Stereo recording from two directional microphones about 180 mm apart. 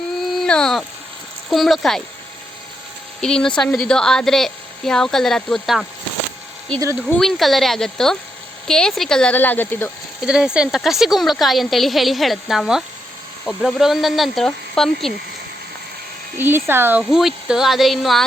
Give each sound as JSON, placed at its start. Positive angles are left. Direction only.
{"t": 0.2, "sound": "a sound", "side_deg": 0}
{"t": 1.5, "sound": "a woman's voice", "side_deg": 0}
{"t": 3.2, "sound": "a woman's voice", "side_deg": 5}
{"t": 6.9, "sound": "a woman's voice", "side_deg": 0}
{"t": 10.2, "sound": "a woman's voice", "side_deg": -5}
{"t": 16.4, "sound": "a woman's voice", "side_deg": -10}